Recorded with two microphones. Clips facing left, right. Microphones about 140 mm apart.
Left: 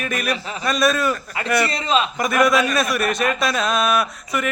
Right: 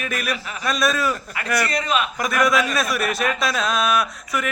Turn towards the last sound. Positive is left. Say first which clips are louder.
# left 1 dB
turn(degrees=0)  # may be behind; listen again after turning